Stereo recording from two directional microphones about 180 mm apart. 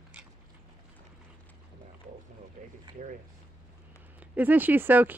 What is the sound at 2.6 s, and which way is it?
Boat, 45° right (ahead or behind).